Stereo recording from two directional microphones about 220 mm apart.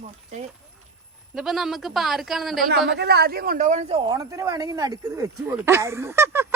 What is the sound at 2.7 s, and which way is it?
A woman's voice, 50° right (ahead or behind).